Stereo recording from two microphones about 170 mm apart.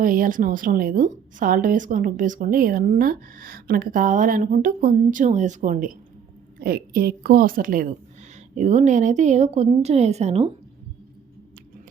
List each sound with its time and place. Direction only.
0.0 s a woman's voice: 55° right (ahead or behind)
8.5 s speech: 45° right (ahead or behind)